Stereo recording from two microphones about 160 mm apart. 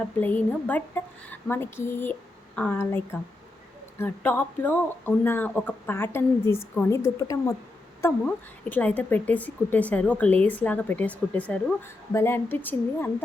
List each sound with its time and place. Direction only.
0.2 s speech: 10° left (ahead or behind)
8.7 s speech: 10° left (ahead or behind)